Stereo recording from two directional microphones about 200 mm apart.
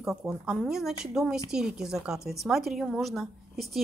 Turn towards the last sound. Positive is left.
turn(degrees=0)  # may be behind; listen again after turning